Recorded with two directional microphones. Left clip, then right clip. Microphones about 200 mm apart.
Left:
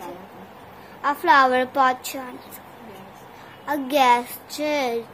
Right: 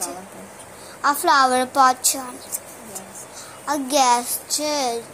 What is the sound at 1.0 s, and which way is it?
A woman's voice, centre (ahead or behind).